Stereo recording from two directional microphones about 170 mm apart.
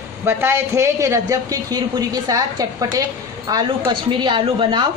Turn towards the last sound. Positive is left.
turn(degrees=-30)  # may be behind; listen again after turning